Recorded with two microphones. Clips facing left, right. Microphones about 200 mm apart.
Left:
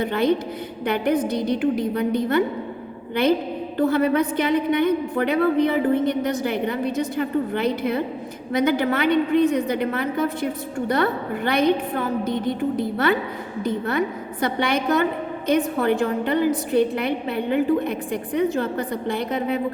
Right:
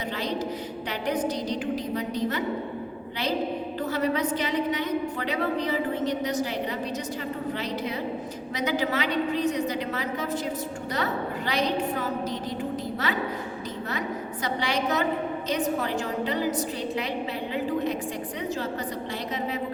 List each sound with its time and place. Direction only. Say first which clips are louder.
0.0 s a woman's voice: left 9 dB; 55° left (ahead or behind)
3.8 s a woman's voice: left 8 dB; 55° left (ahead or behind)